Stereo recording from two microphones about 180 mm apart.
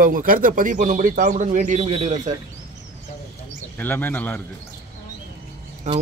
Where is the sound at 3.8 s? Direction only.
10° left (ahead or behind).